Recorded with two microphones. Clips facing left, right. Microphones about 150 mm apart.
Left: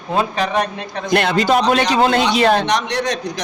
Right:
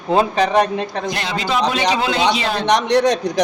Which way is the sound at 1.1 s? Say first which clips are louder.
Left 11 dB; 60° left (ahead or behind).